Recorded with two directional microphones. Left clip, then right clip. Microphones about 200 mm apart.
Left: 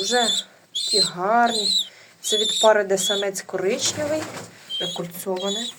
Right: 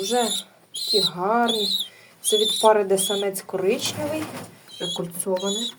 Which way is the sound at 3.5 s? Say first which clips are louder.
Even; 5° left (ahead or behind).